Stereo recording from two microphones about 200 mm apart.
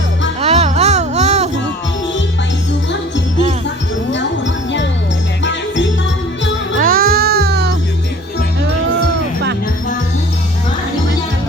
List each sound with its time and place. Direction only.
0.4 s music: 30° right (ahead or behind)
5.4 s music: 65° left (ahead or behind)
6.7 s music: 45° right (ahead or behind)